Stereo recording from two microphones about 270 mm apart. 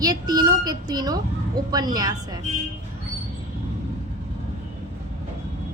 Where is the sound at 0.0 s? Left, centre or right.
Centre.